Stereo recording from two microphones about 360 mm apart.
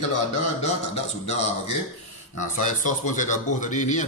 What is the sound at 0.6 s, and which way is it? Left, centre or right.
A man's voice, centre.